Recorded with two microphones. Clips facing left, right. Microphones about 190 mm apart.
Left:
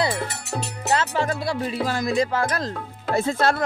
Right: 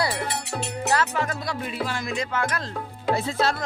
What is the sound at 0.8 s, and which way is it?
Speech, 30° left (ahead or behind).